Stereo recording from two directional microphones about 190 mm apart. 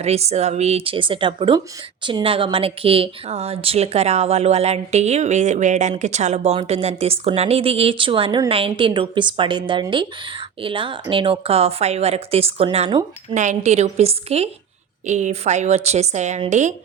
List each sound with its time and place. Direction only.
0.0 s a woman's voice: 35° right (ahead or behind)
13.3 s a woman's voice: 40° right (ahead or behind)